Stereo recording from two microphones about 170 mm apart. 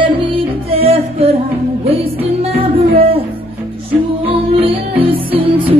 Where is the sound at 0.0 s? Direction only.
30° right (ahead or behind).